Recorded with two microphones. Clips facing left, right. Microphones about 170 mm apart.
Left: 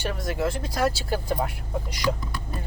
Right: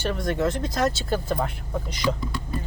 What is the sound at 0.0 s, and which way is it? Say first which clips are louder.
Speech: right 3 dB; 5° left (ahead or behind).